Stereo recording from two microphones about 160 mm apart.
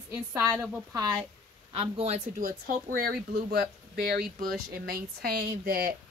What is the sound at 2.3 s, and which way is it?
Speech, 60° right (ahead or behind).